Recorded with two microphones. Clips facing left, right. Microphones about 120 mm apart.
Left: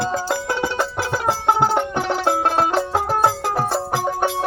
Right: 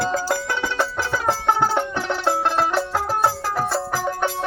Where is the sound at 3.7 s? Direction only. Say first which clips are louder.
Left 2 dB; 15° left (ahead or behind).